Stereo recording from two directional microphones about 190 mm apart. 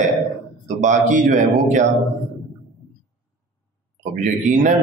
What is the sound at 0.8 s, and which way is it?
Speech, 40° right (ahead or behind).